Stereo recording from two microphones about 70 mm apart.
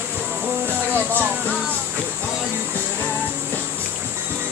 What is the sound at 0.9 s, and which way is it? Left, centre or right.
Speech, right.